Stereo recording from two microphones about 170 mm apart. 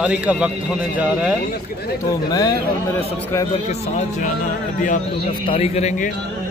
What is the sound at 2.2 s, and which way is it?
Speech, 25° left (ahead or behind).